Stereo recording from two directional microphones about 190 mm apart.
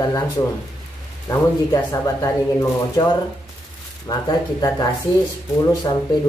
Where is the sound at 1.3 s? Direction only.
20° left (ahead or behind).